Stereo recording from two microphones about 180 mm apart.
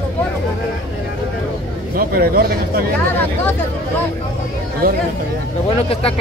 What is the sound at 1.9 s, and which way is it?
Speech, 55° right (ahead or behind).